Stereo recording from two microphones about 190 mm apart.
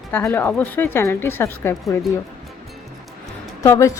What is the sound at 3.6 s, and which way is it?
Speech, 15° left (ahead or behind).